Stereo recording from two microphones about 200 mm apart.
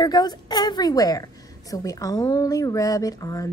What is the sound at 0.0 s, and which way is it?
A woman's voice, 20° left (ahead or behind).